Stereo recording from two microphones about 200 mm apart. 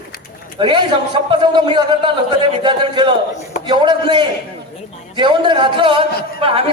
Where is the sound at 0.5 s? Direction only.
25° right (ahead or behind).